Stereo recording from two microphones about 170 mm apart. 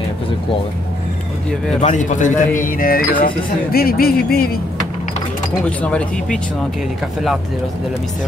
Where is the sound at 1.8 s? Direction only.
45° left (ahead or behind); by 4.6 s 65° left (ahead or behind).